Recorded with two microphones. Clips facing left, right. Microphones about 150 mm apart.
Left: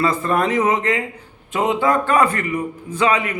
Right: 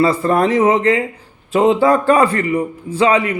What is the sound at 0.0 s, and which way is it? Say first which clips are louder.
A man's voice: right 5 dB; 35° right (ahead or behind).